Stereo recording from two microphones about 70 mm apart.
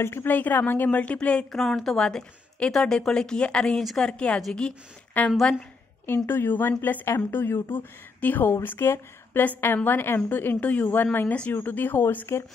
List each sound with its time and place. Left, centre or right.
0.0 s a woman's voice: left; by 1.4 s centre
1.5 s a woman's voice: centre
5.2 s a woman's voice: left
8.6 s a woman's voice: left